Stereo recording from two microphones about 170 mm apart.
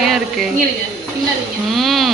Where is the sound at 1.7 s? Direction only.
Centre (ahead or behind).